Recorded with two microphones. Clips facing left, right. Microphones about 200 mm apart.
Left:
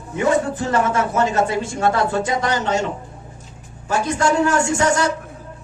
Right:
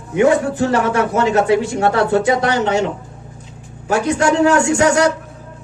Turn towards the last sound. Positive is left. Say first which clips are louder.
# right 5 dB
turn(degrees=-70)  # may be behind; listen again after turning